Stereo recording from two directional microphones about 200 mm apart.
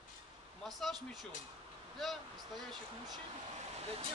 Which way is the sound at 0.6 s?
Centre (ahead or behind).